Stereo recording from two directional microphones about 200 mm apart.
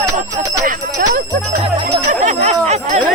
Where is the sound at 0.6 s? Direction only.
45° right (ahead or behind).